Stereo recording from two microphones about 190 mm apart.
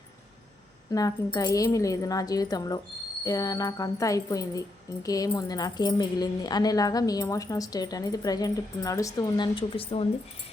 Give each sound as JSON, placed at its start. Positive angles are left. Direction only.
{"t": 0.9, "sound": "speech", "side_deg": 20}